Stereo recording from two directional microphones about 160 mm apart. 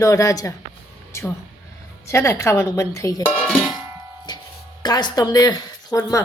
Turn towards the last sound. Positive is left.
turn(degrees=20)  # may be behind; listen again after turning